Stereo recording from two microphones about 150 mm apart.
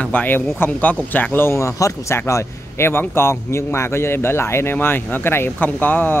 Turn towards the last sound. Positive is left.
turn(degrees=10)  # may be behind; listen again after turning